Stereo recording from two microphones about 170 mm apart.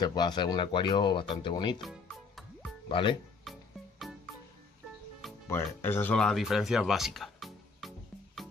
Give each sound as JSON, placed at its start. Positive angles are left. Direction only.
{"t": 0.0, "sound": "speech", "side_deg": 25}
{"t": 1.8, "sound": "music", "side_deg": 0}
{"t": 2.9, "sound": "speech", "side_deg": 30}
{"t": 3.5, "sound": "music", "side_deg": 0}
{"t": 5.5, "sound": "speech", "side_deg": 15}